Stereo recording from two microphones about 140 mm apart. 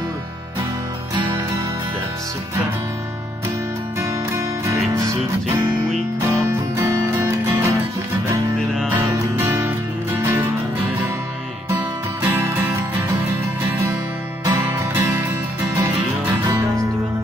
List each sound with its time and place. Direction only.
4.3 s music: 20° right (ahead or behind)
8.9 s music: 15° right (ahead or behind)
12.2 s music: 15° right (ahead or behind)
14.4 s music: 20° right (ahead or behind)
16.4 s music: 25° right (ahead or behind)